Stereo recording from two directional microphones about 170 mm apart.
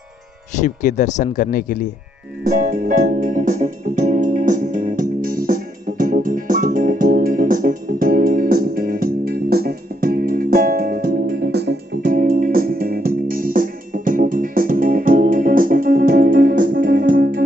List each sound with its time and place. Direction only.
0.6 s speech: 45° left (ahead or behind)
2.4 s music: 55° right (ahead or behind)